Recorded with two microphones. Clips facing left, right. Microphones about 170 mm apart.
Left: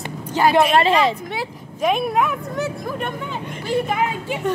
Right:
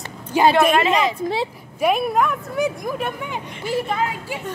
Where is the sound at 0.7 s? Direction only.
30° left (ahead or behind).